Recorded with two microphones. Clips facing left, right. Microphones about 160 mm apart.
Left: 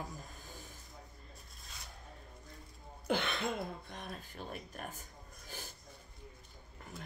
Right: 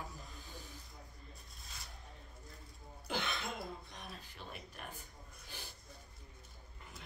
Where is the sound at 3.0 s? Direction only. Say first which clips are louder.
Left 6 dB; 55° left (ahead or behind).